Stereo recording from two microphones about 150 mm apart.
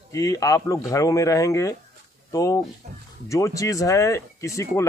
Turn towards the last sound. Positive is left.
turn(degrees=20)  # may be behind; listen again after turning